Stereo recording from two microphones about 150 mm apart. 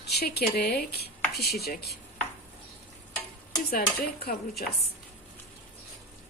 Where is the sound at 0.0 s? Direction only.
90° left.